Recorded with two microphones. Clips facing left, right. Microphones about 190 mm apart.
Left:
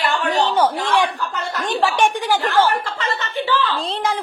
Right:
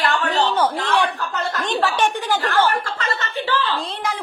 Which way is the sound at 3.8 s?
30° left (ahead or behind).